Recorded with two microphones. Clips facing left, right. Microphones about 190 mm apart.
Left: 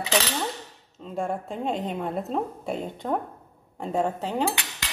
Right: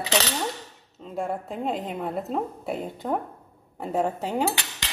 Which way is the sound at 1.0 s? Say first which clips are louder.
Even; centre (ahead or behind).